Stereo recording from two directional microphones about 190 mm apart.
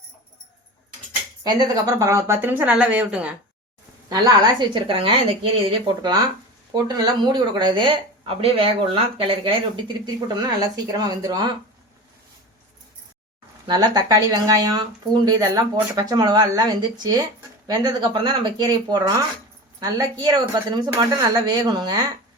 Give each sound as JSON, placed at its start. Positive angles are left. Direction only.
{"t": 1.5, "sound": "speech", "side_deg": -20}
{"t": 4.1, "sound": "speech", "side_deg": -25}
{"t": 13.7, "sound": "speech", "side_deg": -20}